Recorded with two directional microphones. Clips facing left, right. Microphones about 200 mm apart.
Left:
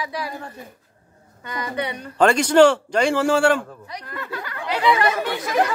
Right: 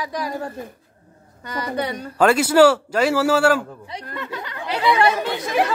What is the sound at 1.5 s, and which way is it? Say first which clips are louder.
Speech: right 2 dB; 35° right (ahead or behind).